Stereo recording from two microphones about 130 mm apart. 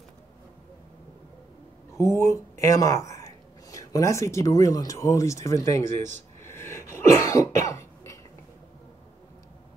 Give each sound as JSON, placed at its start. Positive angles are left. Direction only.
{"t": 2.0, "sound": "speech", "side_deg": 20}
{"t": 7.6, "sound": "cough", "side_deg": 25}